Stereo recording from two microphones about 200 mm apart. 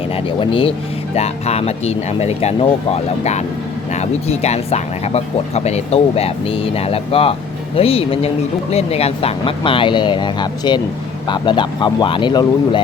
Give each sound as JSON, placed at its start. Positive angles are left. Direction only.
{"t": 0.3, "sound": "speech", "side_deg": 25}